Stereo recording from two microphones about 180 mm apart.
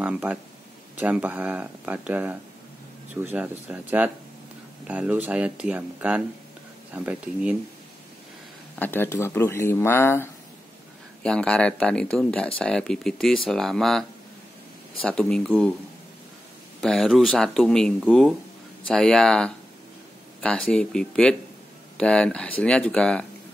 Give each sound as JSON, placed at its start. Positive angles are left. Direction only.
{"t": 0.0, "sound": "speech", "side_deg": -10}
{"t": 8.7, "sound": "speech", "side_deg": 10}
{"t": 15.0, "sound": "speech", "side_deg": 5}
{"t": 16.8, "sound": "speech", "side_deg": 0}